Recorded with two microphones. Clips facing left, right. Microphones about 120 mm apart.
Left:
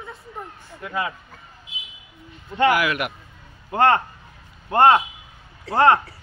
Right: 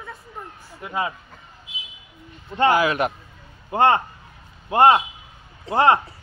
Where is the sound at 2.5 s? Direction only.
25° right (ahead or behind).